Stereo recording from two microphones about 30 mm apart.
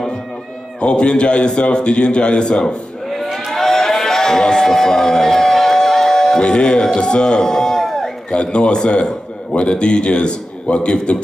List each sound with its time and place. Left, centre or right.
0.7 s a man's voice: left
3.1 s a sound: centre; by 4.6 s left
4.6 s music: centre
6.4 s a man's voice: left; by 8.1 s centre
8.3 s a man's voice: left